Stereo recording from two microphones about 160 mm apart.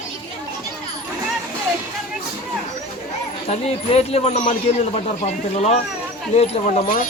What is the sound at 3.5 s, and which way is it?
Speech, 40° left (ahead or behind).